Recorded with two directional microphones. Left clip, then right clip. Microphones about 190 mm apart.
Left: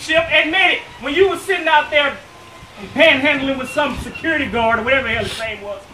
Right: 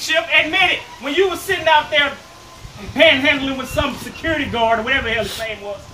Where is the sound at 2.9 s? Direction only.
5° right (ahead or behind).